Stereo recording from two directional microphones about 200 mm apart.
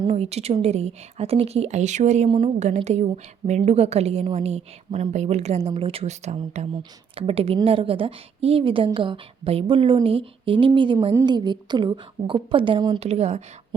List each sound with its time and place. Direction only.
0.1 s a woman's voice: 30° right (ahead or behind)